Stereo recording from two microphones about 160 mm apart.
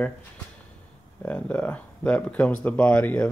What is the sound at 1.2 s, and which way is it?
Speech, 10° left (ahead or behind).